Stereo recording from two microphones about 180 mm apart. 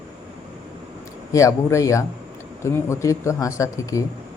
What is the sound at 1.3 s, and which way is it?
Speech, 15° left (ahead or behind).